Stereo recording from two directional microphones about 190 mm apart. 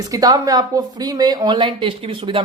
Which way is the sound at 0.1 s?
20° right (ahead or behind).